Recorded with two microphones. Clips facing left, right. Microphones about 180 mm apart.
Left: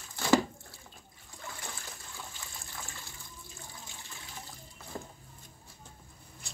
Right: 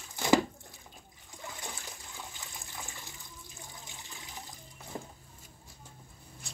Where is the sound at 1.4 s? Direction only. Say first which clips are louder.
Right 1 dB; 15° right (ahead or behind).